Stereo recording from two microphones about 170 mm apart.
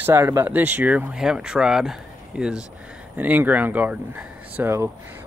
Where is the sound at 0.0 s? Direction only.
15° right (ahead or behind).